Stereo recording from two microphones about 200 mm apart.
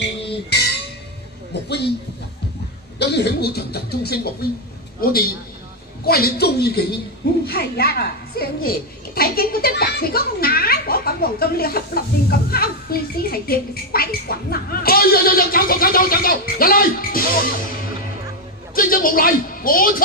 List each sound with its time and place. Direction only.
1.5 s speech: 55° left (ahead or behind)
3.0 s speech: 55° left (ahead or behind)
18.8 s speech: 45° left (ahead or behind)